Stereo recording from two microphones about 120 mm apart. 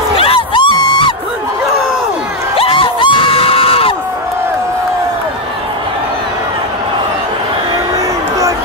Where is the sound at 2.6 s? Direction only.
50° left (ahead or behind).